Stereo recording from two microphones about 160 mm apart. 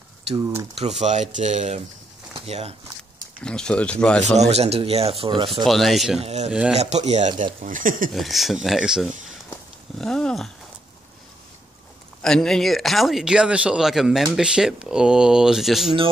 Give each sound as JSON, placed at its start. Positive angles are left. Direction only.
{"t": 0.7, "sound": "speech", "side_deg": -45}
{"t": 3.4, "sound": "speech", "side_deg": 5}
{"t": 4.2, "sound": "speech", "side_deg": -45}
{"t": 5.7, "sound": "speech", "side_deg": 0}
{"t": 6.2, "sound": "speech", "side_deg": -45}
{"t": 6.5, "sound": "speech", "side_deg": -5}
{"t": 6.8, "sound": "speech", "side_deg": -45}
{"t": 7.6, "sound": "speech", "side_deg": -55}
{"t": 8.1, "sound": "speech", "side_deg": 0}
{"t": 9.5, "sound": "a sound", "side_deg": 5}
{"t": 12.2, "sound": "speech", "side_deg": 5}